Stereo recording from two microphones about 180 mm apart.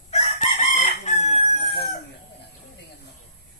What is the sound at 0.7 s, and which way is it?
Chicken, 40° left (ahead or behind).